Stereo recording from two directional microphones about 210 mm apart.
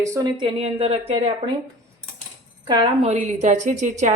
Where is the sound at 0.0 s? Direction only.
15° right (ahead or behind).